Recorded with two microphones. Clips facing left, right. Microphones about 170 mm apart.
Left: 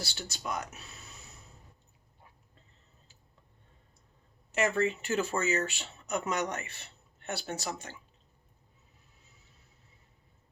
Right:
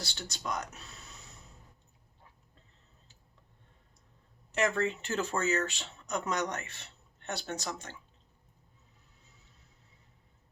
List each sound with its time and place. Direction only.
0.0 s speech: 5° left (ahead or behind)
4.5 s speech: 5° left (ahead or behind)